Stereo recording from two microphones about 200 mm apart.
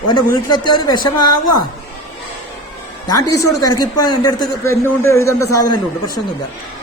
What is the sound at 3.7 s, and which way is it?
A man's voice, 20° left (ahead or behind).